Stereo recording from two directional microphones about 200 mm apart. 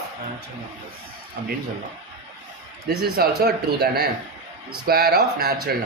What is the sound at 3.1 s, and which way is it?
Speech, 50° right (ahead or behind).